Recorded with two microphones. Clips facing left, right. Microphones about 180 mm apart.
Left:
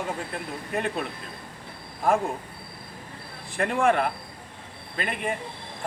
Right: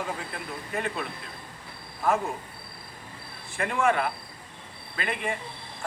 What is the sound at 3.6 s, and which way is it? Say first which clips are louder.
Speech: left 3 dB; 35° left (ahead or behind).